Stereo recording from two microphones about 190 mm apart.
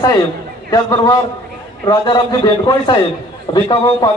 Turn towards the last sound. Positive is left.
turn(degrees=25)  # may be behind; listen again after turning